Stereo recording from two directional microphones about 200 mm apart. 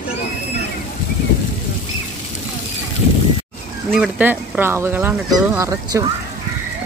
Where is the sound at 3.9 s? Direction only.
5° right (ahead or behind).